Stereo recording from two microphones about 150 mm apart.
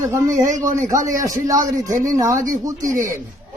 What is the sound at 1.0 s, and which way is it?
Speech, 20° right (ahead or behind).